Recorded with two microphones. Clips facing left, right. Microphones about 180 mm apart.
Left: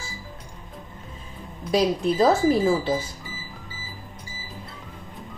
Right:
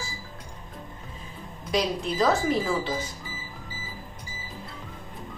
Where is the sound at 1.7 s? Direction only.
30° left (ahead or behind).